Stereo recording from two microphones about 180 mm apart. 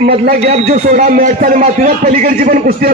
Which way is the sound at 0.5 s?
35° right (ahead or behind).